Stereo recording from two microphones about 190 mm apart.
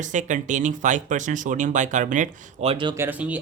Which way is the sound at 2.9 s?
10° right (ahead or behind).